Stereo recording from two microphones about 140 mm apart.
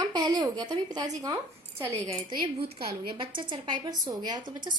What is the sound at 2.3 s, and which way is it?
A woman's voice, 40° right (ahead or behind).